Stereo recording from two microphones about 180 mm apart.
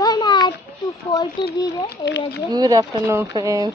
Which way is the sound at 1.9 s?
70° left (ahead or behind).